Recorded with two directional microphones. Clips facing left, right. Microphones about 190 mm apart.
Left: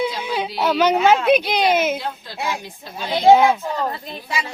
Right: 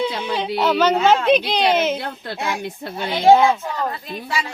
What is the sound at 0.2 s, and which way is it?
Speech, 5° left (ahead or behind).